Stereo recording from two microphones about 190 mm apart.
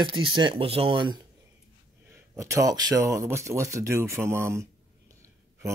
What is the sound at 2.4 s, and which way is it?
Speech, 15° right (ahead or behind).